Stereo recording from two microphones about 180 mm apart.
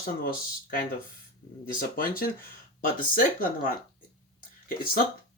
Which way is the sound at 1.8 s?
55° left (ahead or behind).